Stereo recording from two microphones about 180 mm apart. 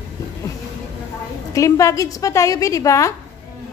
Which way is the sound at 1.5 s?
15° left (ahead or behind).